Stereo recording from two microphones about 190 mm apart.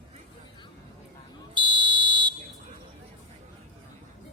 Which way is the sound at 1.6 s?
25° right (ahead or behind).